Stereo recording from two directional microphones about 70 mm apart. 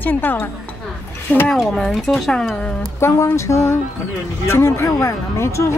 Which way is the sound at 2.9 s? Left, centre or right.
Left.